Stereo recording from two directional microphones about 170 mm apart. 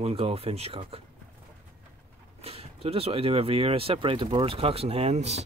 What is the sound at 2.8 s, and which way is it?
Speech, 35° right (ahead or behind).